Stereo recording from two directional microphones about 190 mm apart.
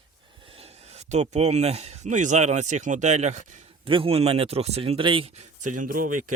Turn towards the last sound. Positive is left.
turn(degrees=-45)  # may be behind; listen again after turning